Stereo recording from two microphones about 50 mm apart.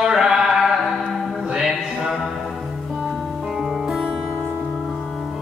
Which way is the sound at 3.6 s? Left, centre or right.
Centre.